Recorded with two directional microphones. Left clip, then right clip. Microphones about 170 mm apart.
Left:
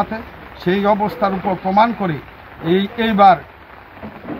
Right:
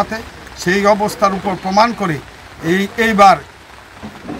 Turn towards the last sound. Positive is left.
turn(degrees=-10)  # may be behind; listen again after turning